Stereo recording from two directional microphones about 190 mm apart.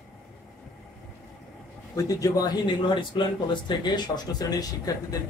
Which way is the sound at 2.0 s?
20° left (ahead or behind).